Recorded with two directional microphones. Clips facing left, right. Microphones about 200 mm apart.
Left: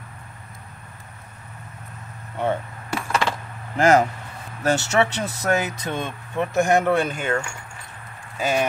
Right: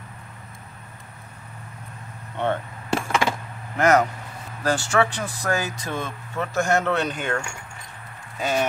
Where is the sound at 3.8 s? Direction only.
30° left (ahead or behind); by 7.3 s 5° left (ahead or behind).